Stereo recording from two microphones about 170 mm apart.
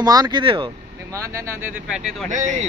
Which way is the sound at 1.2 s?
15° right (ahead or behind).